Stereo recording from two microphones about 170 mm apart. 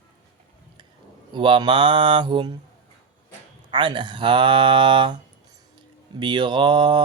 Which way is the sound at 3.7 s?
25° right (ahead or behind).